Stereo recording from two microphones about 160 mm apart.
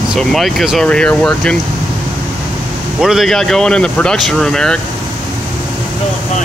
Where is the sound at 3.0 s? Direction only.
Centre (ahead or behind).